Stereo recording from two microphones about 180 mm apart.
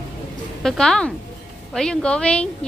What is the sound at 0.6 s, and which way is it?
Speech, 5° left (ahead or behind).